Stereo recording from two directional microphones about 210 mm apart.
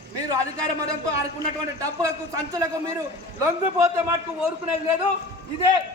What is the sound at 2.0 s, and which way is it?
Speech, 15° right (ahead or behind).